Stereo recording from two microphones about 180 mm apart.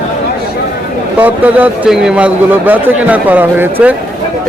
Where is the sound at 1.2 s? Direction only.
10° right (ahead or behind).